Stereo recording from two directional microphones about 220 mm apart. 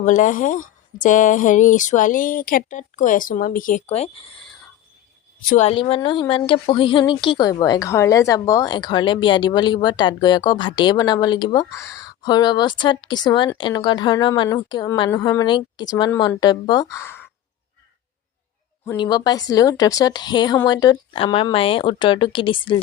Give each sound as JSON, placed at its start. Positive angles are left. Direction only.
{"t": 0.0, "sound": "speech", "side_deg": 35}
{"t": 5.5, "sound": "a woman's voice", "side_deg": 30}
{"t": 18.9, "sound": "a woman's voice", "side_deg": 20}